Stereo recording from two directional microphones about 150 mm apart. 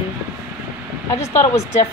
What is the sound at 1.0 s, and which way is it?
Speech, 20° left (ahead or behind).